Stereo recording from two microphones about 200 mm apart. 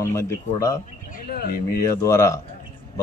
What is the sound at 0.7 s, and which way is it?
Speech, 45° left (ahead or behind).